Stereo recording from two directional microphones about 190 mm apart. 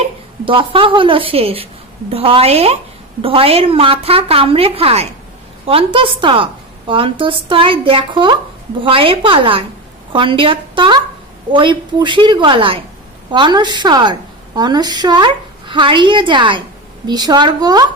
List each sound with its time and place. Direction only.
0.5 s a woman's voice: 25° right (ahead or behind)